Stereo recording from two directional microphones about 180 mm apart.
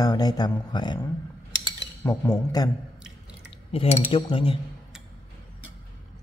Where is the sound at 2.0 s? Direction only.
20° left (ahead or behind).